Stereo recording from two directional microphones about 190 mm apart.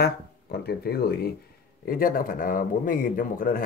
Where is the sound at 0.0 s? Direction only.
55° left (ahead or behind).